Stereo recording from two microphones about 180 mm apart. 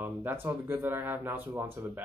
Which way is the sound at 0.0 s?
10° right (ahead or behind).